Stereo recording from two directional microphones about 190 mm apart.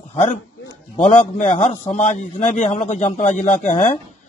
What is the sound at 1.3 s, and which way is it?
A man's voice, 40° left (ahead or behind).